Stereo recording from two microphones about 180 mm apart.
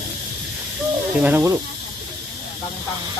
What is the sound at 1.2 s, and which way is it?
Speech, 10° right (ahead or behind).